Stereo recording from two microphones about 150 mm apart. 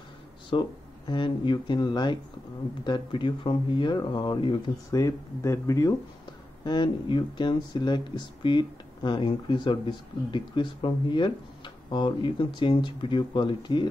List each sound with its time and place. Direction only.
0.5 s speech: 30° left (ahead or behind)
4.9 s speech: 20° left (ahead or behind)